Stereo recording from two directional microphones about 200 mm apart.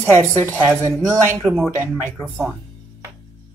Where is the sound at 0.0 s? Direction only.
10° right (ahead or behind).